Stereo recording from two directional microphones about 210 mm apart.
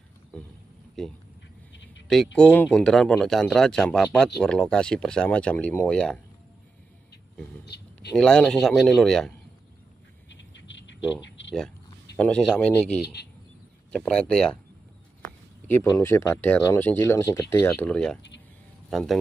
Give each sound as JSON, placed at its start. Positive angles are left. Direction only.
{"t": 0.3, "sound": "speech", "side_deg": 5}
{"t": 2.3, "sound": "speech", "side_deg": 5}
{"t": 7.6, "sound": "a sound", "side_deg": 50}
{"t": 8.2, "sound": "speech", "side_deg": 5}
{"t": 10.3, "sound": "a sound", "side_deg": 60}
{"t": 12.2, "sound": "speech", "side_deg": 5}
{"t": 13.9, "sound": "speech", "side_deg": 5}
{"t": 15.9, "sound": "speech", "side_deg": 10}